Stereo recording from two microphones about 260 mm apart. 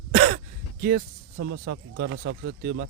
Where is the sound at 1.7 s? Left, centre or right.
Right.